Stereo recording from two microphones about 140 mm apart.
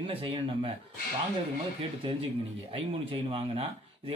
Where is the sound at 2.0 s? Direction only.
40° right (ahead or behind).